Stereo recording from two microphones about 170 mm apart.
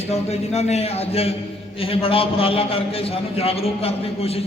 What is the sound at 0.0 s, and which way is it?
A man's voice, 40° left (ahead or behind).